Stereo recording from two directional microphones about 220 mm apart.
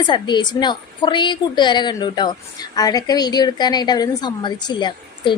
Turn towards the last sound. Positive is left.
turn(degrees=20)  # may be behind; listen again after turning